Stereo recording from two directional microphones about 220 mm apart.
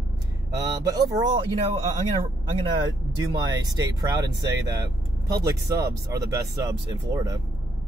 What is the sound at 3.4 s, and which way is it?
Speech, 15° right (ahead or behind).